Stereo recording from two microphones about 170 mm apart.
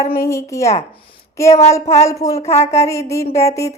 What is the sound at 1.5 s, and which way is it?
Speech, 40° left (ahead or behind).